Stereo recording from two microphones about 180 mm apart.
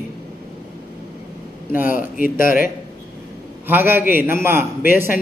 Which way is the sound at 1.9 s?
50° left (ahead or behind).